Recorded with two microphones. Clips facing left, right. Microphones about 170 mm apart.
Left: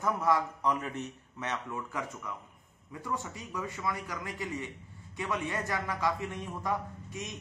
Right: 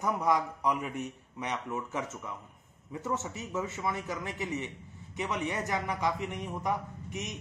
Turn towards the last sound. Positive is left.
turn(degrees=-20)  # may be behind; listen again after turning